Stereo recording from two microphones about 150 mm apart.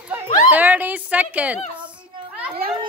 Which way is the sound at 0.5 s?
10° right (ahead or behind).